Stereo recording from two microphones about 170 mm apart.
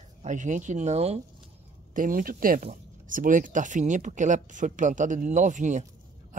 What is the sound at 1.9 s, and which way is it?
Speech, 55° right (ahead or behind).